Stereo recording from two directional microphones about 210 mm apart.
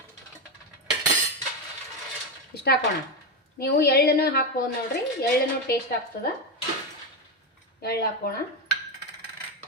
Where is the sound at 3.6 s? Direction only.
45° left (ahead or behind).